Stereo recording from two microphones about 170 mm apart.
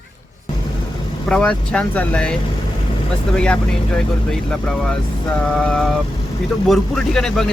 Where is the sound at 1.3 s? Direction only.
5° left (ahead or behind).